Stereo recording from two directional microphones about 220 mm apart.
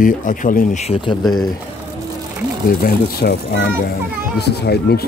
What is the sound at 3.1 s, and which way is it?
A child's voice, 45° left (ahead or behind).